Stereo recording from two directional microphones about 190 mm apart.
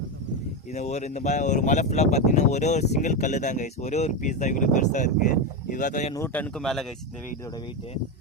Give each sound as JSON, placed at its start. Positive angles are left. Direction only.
{"t": 0.7, "sound": "speech", "side_deg": 35}
{"t": 6.1, "sound": "speech", "side_deg": 10}